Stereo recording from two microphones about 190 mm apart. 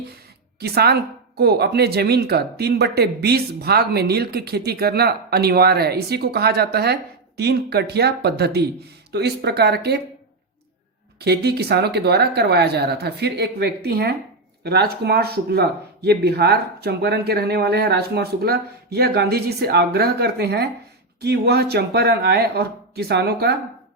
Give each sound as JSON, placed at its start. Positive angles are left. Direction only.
{"t": 0.6, "sound": "speech", "side_deg": -55}
{"t": 11.2, "sound": "speech", "side_deg": -60}